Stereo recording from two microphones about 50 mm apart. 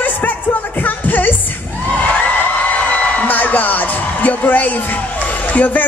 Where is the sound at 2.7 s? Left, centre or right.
Left.